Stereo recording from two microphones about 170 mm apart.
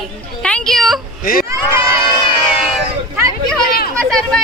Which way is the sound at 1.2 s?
55° left (ahead or behind).